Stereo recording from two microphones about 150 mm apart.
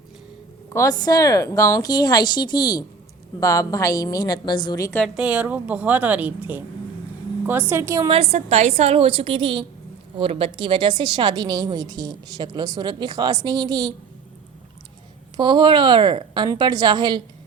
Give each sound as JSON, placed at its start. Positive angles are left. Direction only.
{"t": 0.7, "sound": "a woman's voice", "side_deg": 20}
{"t": 5.0, "sound": "a woman's voice", "side_deg": -5}
{"t": 7.7, "sound": "a woman's voice", "side_deg": -15}
{"t": 8.0, "sound": "a woman's voice", "side_deg": -40}
{"t": 15.4, "sound": "a woman's voice", "side_deg": -30}